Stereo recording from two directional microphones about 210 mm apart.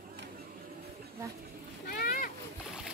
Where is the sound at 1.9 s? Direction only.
45° left (ahead or behind).